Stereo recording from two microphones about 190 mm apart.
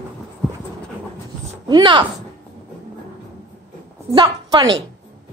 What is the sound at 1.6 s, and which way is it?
Speech, 20° right (ahead or behind).